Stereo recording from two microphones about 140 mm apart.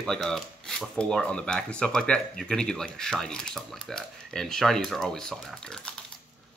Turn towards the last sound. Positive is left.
turn(degrees=5)  # may be behind; listen again after turning